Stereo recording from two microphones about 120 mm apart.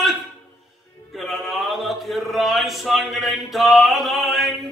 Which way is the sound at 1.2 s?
Centre (ahead or behind).